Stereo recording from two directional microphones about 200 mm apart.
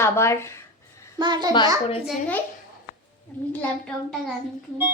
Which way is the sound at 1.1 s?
20° right (ahead or behind).